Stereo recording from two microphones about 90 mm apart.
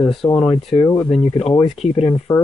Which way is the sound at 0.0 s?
70° left (ahead or behind).